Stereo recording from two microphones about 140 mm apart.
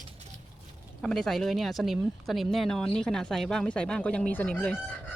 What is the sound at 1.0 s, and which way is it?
Speech, 5° left (ahead or behind).